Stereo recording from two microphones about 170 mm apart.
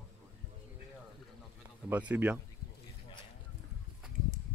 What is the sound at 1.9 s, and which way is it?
Speech, 10° right (ahead or behind).